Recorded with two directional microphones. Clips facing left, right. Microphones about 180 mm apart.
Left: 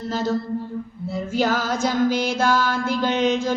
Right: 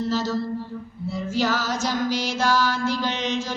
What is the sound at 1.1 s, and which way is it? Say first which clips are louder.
Music: left 2 dB; 55° left (ahead or behind).